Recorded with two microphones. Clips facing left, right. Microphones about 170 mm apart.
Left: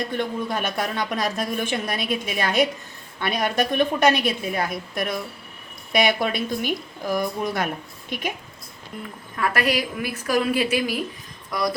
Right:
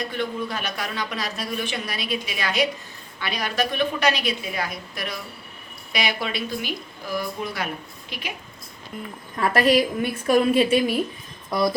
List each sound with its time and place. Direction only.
0.2 s a man's voice: 50° left (ahead or behind)
9.3 s a woman's voice: 30° right (ahead or behind)